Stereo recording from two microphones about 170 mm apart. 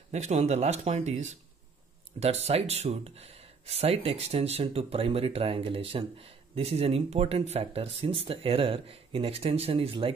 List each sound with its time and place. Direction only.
0.1 s speech: 40° right (ahead or behind)